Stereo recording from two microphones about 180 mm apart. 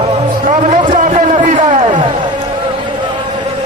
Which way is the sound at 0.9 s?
40° right (ahead or behind).